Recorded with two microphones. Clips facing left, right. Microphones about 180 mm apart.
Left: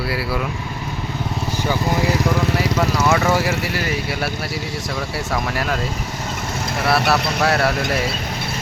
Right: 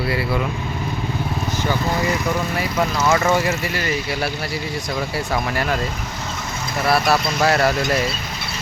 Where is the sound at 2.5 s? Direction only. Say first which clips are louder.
Left 3 dB; 75° left (ahead or behind).